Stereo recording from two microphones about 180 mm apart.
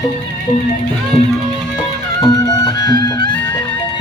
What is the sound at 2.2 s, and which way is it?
Music, 20° left (ahead or behind).